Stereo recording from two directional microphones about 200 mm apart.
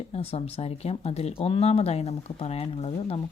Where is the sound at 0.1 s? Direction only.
30° left (ahead or behind).